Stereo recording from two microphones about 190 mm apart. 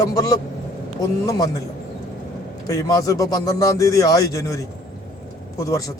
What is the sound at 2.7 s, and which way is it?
Speech, 20° left (ahead or behind).